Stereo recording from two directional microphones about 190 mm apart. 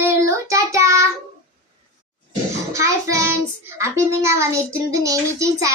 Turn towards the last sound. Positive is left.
turn(degrees=-15)  # may be behind; listen again after turning